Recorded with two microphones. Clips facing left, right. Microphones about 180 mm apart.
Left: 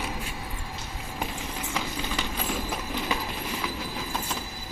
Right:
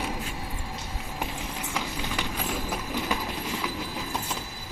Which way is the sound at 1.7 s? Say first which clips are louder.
Even; 10° right (ahead or behind).